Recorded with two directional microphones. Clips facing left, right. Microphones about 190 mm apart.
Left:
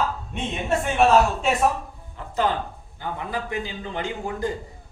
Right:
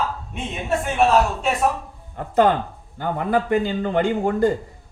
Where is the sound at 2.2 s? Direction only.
50° right (ahead or behind).